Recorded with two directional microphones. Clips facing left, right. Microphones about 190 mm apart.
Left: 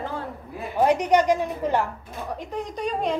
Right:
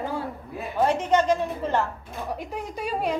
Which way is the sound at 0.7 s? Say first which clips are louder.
Left 2 dB; 15° left (ahead or behind).